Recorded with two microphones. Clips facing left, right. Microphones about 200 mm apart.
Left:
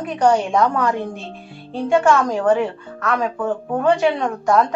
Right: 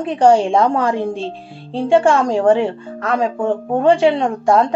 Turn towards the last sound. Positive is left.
turn(degrees=-30)  # may be behind; listen again after turning